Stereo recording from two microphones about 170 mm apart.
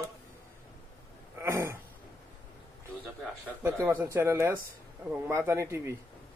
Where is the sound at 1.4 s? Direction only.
15° right (ahead or behind).